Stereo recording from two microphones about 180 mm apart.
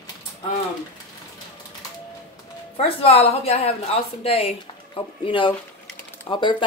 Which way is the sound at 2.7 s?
30° left (ahead or behind).